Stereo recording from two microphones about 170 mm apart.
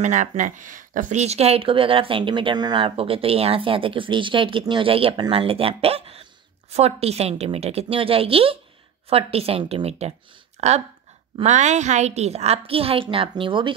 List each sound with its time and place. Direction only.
0.0 s speech: 45° right (ahead or behind); by 13.7 s 30° right (ahead or behind)